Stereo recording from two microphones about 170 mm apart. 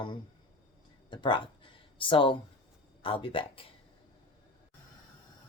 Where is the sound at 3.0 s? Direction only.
30° left (ahead or behind).